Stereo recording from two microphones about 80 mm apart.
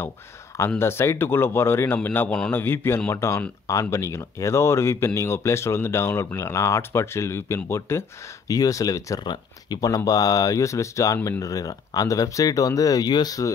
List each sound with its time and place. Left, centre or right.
0.7 s speech: left
8.5 s speech: left
9.2 s speech: left